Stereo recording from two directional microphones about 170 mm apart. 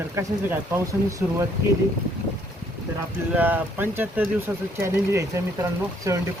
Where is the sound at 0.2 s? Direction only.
15° right (ahead or behind).